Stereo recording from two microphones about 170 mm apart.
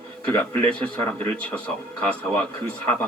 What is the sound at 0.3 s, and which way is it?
A man's voice, 10° left (ahead or behind).